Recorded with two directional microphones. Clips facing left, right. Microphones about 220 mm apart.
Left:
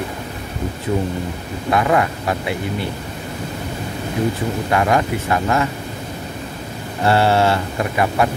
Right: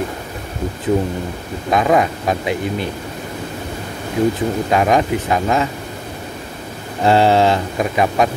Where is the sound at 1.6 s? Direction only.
20° right (ahead or behind).